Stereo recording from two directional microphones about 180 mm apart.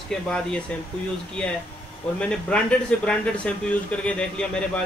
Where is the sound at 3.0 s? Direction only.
5° left (ahead or behind).